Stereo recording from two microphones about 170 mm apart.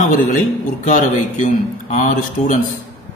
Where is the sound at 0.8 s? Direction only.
50° left (ahead or behind).